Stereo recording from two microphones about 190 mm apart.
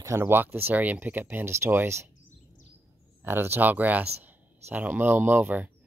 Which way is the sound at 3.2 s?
10° right (ahead or behind).